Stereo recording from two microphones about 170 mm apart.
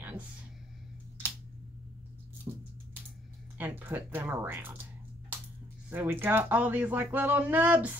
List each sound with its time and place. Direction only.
2.5 s a sound: 30° right (ahead or behind)
3.5 s speech: 10° right (ahead or behind)
5.9 s speech: 10° right (ahead or behind)